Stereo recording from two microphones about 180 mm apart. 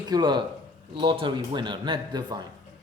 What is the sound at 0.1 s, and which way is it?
Speech, 25° right (ahead or behind).